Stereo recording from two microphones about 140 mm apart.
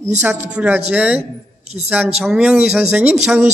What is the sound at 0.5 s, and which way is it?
A man's voice, 10° right (ahead or behind).